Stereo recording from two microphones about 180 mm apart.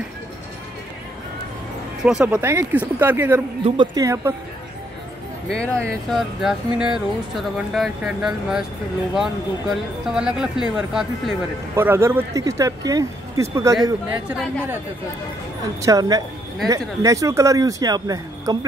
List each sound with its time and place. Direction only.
2.0 s speech: 10° right (ahead or behind)
3.6 s speech: 25° right (ahead or behind)
5.5 s speech: 5° left (ahead or behind)
11.7 s speech: 15° right (ahead or behind)
15.8 s speech: 20° right (ahead or behind)